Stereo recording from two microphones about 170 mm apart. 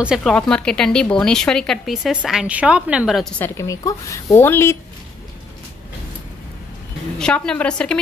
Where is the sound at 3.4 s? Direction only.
20° left (ahead or behind).